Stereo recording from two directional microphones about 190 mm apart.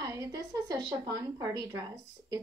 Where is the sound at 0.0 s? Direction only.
20° right (ahead or behind).